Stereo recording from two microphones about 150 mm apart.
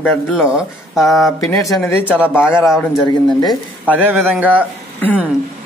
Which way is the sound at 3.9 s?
10° right (ahead or behind).